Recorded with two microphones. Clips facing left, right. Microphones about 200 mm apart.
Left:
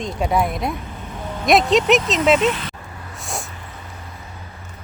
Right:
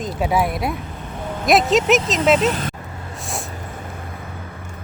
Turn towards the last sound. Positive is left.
turn(degrees=0)  # may be behind; listen again after turning